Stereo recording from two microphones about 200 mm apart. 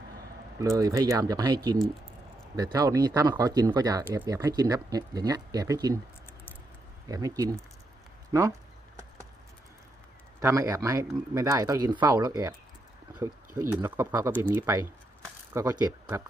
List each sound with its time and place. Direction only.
0.6 s speech: 15° right (ahead or behind)
7.1 s speech: 15° right (ahead or behind)
10.4 s speech: 15° right (ahead or behind)
13.6 s speech: 15° right (ahead or behind)